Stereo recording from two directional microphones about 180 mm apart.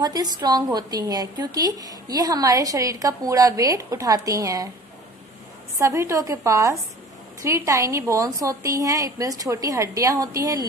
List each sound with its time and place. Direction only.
0.0 s a woman's voice: 20° right (ahead or behind)
5.8 s a woman's voice: 15° right (ahead or behind)